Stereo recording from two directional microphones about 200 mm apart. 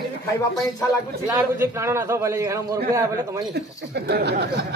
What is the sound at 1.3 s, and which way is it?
Speech, 15° right (ahead or behind).